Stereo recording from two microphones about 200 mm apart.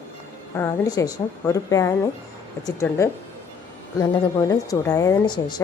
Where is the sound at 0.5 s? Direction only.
15° left (ahead or behind).